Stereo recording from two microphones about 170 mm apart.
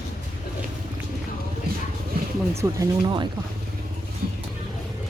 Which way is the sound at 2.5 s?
15° right (ahead or behind).